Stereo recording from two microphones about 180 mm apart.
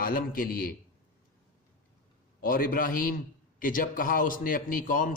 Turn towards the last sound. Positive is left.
turn(degrees=50)  # may be behind; listen again after turning